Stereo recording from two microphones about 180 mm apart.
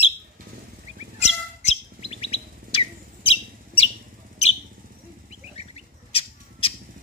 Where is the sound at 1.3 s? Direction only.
35° left (ahead or behind).